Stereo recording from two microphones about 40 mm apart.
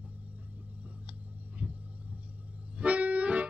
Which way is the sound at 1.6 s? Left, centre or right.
Right.